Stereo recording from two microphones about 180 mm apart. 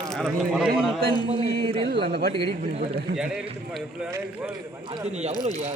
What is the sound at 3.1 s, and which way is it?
A man's voice, 5° right (ahead or behind).